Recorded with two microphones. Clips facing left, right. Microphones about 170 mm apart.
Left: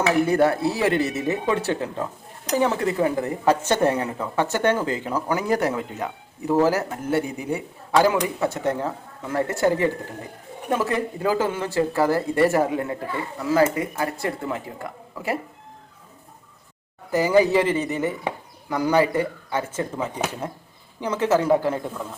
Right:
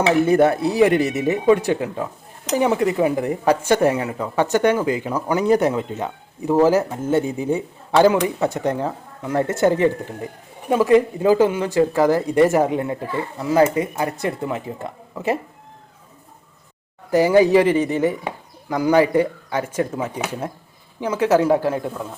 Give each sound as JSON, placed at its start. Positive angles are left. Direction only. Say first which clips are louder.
{"t": 0.0, "sound": "speech", "louder": "right 4 dB", "side_deg": -20}
{"t": 17.2, "sound": "speech", "louder": "right 4 dB", "side_deg": -15}